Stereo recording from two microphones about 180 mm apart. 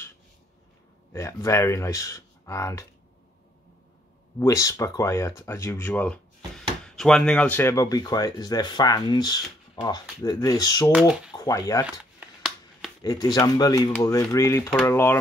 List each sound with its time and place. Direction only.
1.1 s speech: 15° left (ahead or behind)
4.4 s speech: 20° left (ahead or behind)
10.9 s speech: 5° right (ahead or behind)
11.3 s speech: 20° left (ahead or behind)
11.8 s a sound: 5° right (ahead or behind)
13.0 s speech: 20° left (ahead or behind)